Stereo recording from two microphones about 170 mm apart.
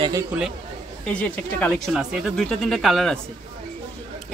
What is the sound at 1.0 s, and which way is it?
Speech, 5° left (ahead or behind).